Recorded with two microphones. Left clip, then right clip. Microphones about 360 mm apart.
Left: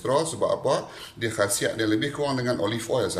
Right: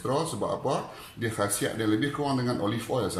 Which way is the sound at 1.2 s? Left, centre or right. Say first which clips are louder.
Left 4 dB; left.